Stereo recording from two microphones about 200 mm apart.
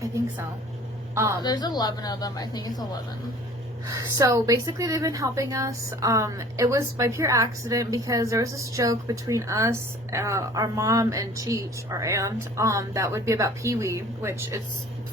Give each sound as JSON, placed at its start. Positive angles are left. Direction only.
{"t": 1.1, "sound": "a woman's voice", "side_deg": -15}
{"t": 1.4, "sound": "a woman's voice", "side_deg": 20}
{"t": 3.8, "sound": "a woman's voice", "side_deg": -20}